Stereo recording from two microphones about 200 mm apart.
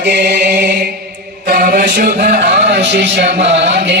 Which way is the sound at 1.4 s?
45° right (ahead or behind).